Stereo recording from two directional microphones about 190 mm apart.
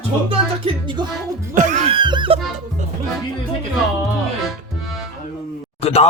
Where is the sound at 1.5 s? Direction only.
40° right (ahead or behind); by 2.4 s 25° right (ahead or behind).